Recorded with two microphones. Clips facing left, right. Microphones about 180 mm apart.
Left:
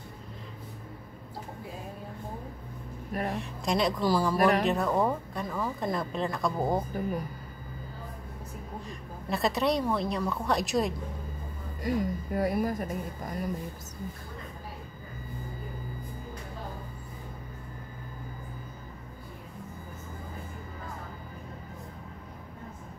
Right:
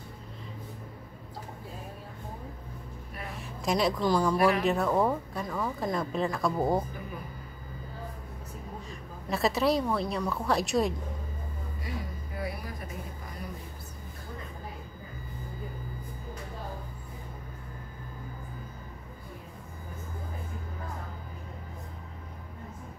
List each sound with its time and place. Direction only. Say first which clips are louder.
3.1 s a sound: left 11 dB; 45° left (ahead or behind)
3.3 s a woman's voice: right 3 dB; centre (ahead or behind)
9.3 s speech: right 1 dB; centre (ahead or behind)
11.8 s speech: left 11 dB; 45° left (ahead or behind)